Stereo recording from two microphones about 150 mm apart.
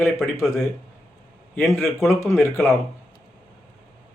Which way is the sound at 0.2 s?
20° left (ahead or behind).